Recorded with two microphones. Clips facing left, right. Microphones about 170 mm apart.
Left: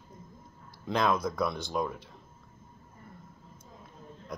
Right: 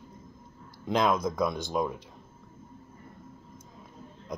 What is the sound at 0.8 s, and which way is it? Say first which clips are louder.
Speech: right 2 dB; 20° right (ahead or behind).